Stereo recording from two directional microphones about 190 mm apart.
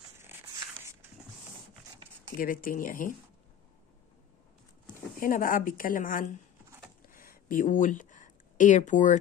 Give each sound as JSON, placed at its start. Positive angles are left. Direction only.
{"t": 2.3, "sound": "a woman's voice", "side_deg": 45}
{"t": 5.2, "sound": "a woman's voice", "side_deg": 45}
{"t": 7.0, "sound": "a sound", "side_deg": 50}